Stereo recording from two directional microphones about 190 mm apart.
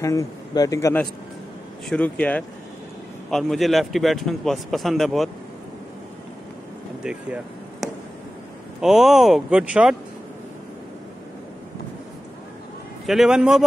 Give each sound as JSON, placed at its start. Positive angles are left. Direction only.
{"t": 0.0, "sound": "a man's voice", "side_deg": 15}
{"t": 8.8, "sound": "speech", "side_deg": 0}
{"t": 13.0, "sound": "speech", "side_deg": 0}